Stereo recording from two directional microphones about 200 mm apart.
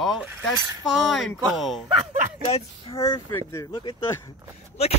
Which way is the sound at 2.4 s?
30° left (ahead or behind).